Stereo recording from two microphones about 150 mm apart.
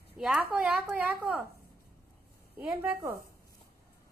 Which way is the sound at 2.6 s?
10° right (ahead or behind).